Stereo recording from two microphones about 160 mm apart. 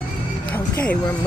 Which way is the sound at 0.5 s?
10° left (ahead or behind).